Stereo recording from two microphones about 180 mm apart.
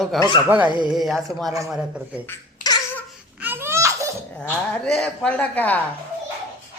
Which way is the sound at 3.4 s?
10° right (ahead or behind).